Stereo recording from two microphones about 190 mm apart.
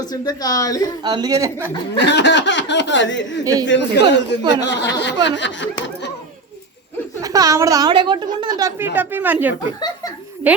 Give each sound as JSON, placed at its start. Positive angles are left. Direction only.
{"t": 0.0, "sound": "a woman's voice", "side_deg": 20}
{"t": 1.0, "sound": "a woman's voice", "side_deg": -20}
{"t": 2.0, "sound": "speech", "side_deg": 65}
{"t": 3.4, "sound": "a woman's voice", "side_deg": -20}
{"t": 3.7, "sound": "speech", "side_deg": 65}
{"t": 7.2, "sound": "a woman's voice", "side_deg": -20}